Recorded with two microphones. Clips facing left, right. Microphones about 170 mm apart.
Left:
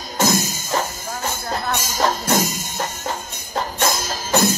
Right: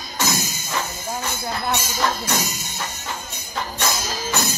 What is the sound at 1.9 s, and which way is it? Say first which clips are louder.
Music: left 4 dB; 45° left (ahead or behind).